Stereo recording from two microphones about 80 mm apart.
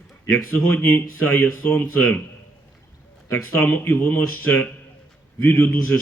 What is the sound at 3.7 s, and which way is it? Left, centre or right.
A man's voice, left.